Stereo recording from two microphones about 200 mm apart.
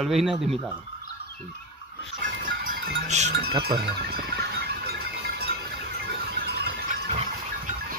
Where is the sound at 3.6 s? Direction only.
50° right (ahead or behind).